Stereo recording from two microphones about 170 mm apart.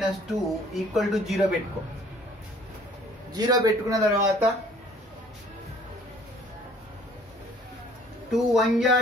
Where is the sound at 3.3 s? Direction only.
20° right (ahead or behind).